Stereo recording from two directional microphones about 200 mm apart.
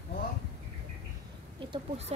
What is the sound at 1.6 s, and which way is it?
Speech, 30° right (ahead or behind).